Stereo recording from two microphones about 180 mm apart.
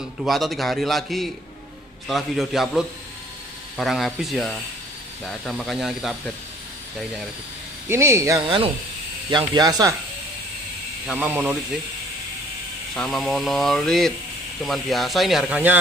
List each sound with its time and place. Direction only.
0.2 s speech: centre (ahead or behind)
7.9 s speech: 15° right (ahead or behind)
11.1 s speech: 10° right (ahead or behind)
12.9 s speech: centre (ahead or behind)